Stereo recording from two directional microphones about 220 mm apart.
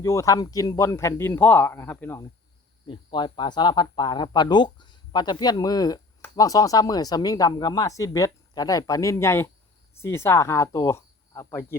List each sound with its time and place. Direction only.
0.0 s speech: 15° left (ahead or behind)
2.8 s speech: 20° left (ahead or behind)